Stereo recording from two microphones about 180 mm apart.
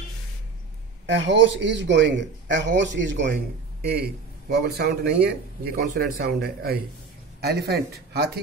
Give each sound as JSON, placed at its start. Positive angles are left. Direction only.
{"t": 1.0, "sound": "a man's voice", "side_deg": -85}
{"t": 3.8, "sound": "speech", "side_deg": -60}